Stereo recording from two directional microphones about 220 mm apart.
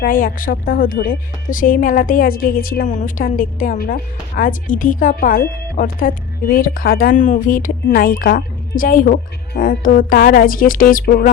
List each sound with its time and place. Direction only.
0.0 s a woman's voice: 40° left (ahead or behind)